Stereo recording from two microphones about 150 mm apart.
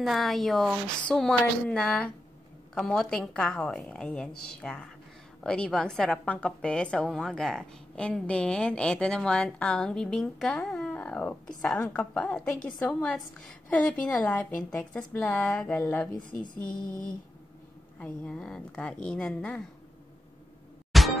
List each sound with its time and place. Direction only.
0.0 s a woman's voice: centre (ahead or behind)
16.2 s speech: 60° left (ahead or behind)
17.9 s a woman's voice: 5° left (ahead or behind)
20.9 s music: centre (ahead or behind)